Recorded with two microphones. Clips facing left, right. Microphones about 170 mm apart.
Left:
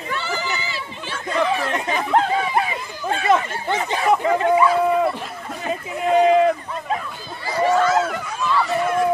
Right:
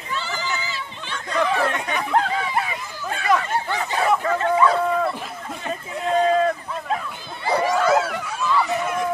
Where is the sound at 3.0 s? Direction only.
25° left (ahead or behind).